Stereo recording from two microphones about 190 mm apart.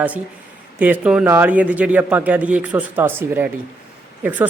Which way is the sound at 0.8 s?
5° right (ahead or behind).